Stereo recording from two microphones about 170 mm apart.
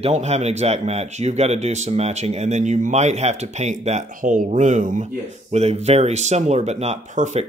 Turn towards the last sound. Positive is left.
turn(degrees=-45)  # may be behind; listen again after turning